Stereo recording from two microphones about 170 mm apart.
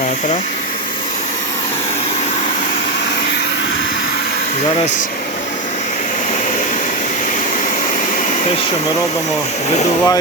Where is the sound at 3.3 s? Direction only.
85° left.